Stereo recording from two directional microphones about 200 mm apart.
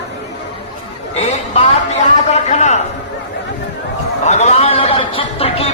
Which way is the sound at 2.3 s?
35° left (ahead or behind).